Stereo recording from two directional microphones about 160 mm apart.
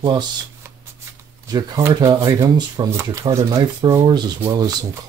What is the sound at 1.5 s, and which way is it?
Speech, 25° right (ahead or behind).